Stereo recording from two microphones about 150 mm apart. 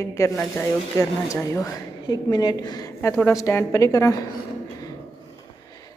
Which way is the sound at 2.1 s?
30° left (ahead or behind).